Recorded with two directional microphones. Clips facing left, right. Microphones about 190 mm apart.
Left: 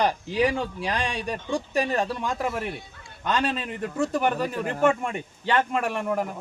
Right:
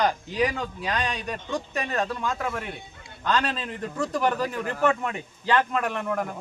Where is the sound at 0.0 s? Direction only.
30° left (ahead or behind).